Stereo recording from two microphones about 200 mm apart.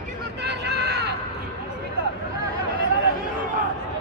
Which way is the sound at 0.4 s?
55° right (ahead or behind).